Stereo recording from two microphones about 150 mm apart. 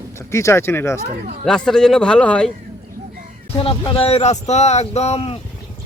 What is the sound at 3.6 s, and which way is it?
Speech, 35° left (ahead or behind).